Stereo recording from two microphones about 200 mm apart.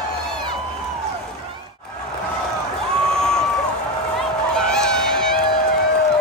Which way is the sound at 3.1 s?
5° left (ahead or behind).